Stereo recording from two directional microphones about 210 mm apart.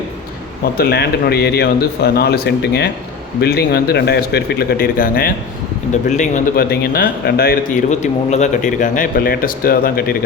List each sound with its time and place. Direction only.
0.8 s speech: 50° left (ahead or behind)
7.9 s speech: 35° left (ahead or behind)